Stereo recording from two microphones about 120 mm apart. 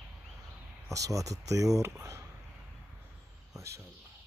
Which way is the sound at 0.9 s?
25° right (ahead or behind).